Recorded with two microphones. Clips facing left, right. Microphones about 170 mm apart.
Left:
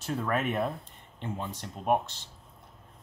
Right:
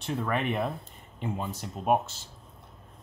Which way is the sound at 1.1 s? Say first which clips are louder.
Right 3 dB; 10° right (ahead or behind).